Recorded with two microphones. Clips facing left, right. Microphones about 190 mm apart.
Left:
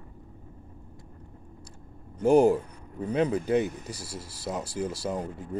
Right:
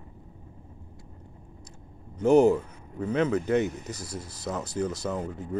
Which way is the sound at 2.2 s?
10° left (ahead or behind).